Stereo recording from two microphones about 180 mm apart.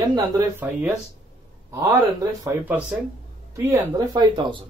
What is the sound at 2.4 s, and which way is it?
Speech, 10° right (ahead or behind).